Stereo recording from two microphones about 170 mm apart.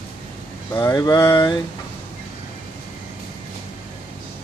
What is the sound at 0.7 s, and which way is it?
Speech, 20° left (ahead or behind).